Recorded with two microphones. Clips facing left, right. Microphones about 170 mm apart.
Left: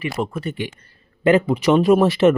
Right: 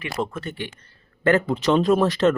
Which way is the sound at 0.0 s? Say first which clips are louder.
Left 3 dB; 10° left (ahead or behind).